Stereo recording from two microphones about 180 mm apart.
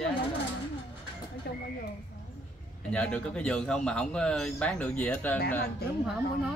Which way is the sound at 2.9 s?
5° left (ahead or behind).